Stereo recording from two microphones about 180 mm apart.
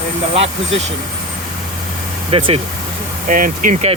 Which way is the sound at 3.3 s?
50° right (ahead or behind).